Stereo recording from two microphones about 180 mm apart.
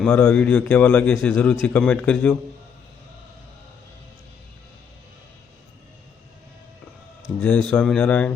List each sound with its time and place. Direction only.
0.0 s a man's voice: 10° left (ahead or behind)
7.4 s a man's voice: 5° left (ahead or behind)